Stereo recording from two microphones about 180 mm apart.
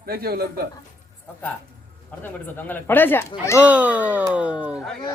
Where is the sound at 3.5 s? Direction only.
5° right (ahead or behind).